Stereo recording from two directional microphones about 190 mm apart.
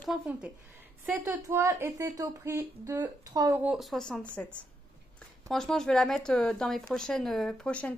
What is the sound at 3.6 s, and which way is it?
Speech, centre (ahead or behind).